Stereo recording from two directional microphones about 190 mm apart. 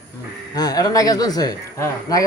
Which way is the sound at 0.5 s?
20° left (ahead or behind).